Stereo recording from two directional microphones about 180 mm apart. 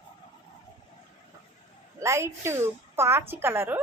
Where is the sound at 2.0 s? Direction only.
15° right (ahead or behind).